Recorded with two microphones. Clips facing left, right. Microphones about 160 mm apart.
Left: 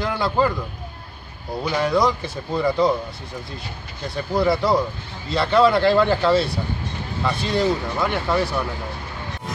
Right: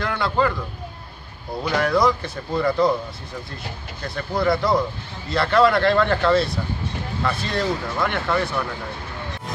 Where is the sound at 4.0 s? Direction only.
10° left (ahead or behind).